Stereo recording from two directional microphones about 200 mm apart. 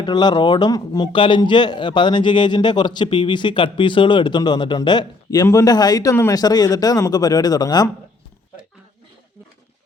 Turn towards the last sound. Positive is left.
turn(degrees=20)  # may be behind; listen again after turning